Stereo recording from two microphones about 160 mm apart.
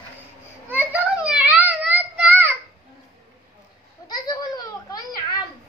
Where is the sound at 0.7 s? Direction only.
10° right (ahead or behind).